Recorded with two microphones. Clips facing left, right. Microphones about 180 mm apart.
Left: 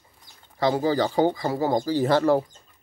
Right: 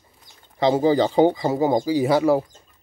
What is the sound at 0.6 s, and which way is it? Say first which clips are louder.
Speech: right 4 dB; 20° right (ahead or behind).